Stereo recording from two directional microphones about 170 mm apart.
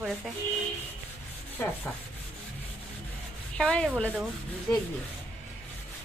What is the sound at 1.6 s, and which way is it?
Rub, 15° left (ahead or behind).